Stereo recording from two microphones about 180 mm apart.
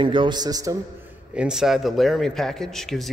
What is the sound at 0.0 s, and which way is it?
Speech, 25° right (ahead or behind).